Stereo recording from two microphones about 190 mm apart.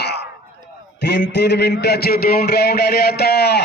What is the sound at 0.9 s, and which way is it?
A man's voice, 65° left (ahead or behind).